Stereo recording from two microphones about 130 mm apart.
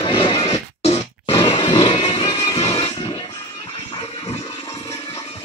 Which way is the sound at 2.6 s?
55° left (ahead or behind).